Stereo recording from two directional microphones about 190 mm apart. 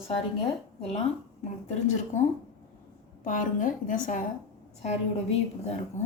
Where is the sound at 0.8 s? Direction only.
30° left (ahead or behind).